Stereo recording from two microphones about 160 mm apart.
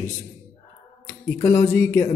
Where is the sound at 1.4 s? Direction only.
15° left (ahead or behind).